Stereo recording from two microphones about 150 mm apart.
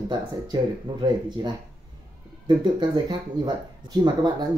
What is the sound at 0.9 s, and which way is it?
Speech, 30° right (ahead or behind).